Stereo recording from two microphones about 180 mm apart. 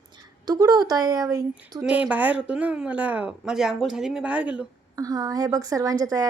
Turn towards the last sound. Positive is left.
turn(degrees=-20)  # may be behind; listen again after turning